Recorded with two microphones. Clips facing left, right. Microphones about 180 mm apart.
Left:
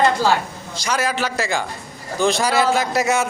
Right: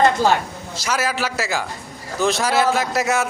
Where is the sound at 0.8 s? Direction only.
5° right (ahead or behind).